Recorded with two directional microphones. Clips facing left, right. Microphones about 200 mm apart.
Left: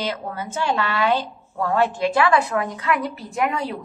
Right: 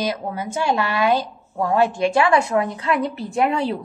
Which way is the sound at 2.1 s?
25° right (ahead or behind).